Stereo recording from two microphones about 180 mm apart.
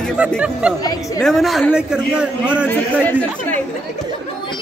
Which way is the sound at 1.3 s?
Centre (ahead or behind).